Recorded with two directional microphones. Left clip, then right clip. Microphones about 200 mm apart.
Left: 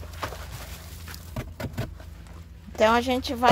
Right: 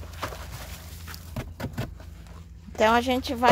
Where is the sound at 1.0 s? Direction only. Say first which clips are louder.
Even; 20° right (ahead or behind).